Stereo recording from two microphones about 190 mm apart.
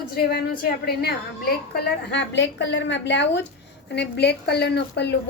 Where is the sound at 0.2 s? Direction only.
55° left (ahead or behind).